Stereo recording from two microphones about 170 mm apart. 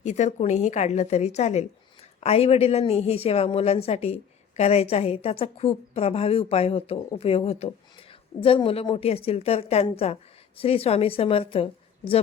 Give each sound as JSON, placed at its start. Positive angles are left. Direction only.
{"t": 0.0, "sound": "a woman's voice", "side_deg": 45}